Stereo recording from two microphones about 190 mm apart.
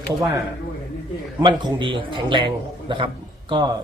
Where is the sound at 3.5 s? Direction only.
25° right (ahead or behind).